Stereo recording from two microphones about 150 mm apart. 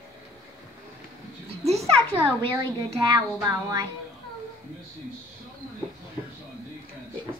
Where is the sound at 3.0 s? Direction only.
25° right (ahead or behind).